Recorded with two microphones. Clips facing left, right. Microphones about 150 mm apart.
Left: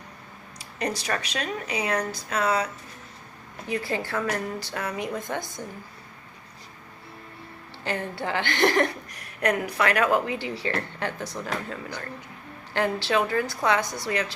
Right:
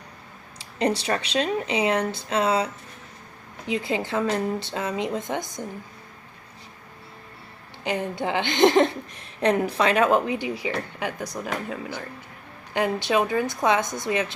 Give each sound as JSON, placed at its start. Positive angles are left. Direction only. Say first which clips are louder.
{"t": 0.6, "sound": "a woman's voice", "louder": "right 6 dB", "side_deg": -30}
{"t": 3.7, "sound": "a woman's voice", "louder": "right 3 dB", "side_deg": -20}
{"t": 7.9, "sound": "a woman's voice", "louder": "right 3 dB", "side_deg": -15}
{"t": 12.7, "sound": "a woman's voice", "louder": "right 2 dB", "side_deg": -15}